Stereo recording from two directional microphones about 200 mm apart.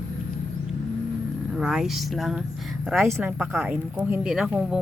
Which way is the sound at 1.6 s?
Centre (ahead or behind).